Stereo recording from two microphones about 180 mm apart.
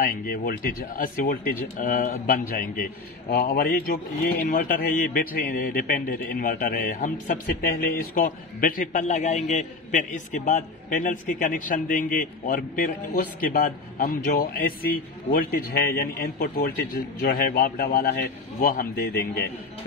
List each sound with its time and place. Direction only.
0.2 s a man's voice: 55° left (ahead or behind)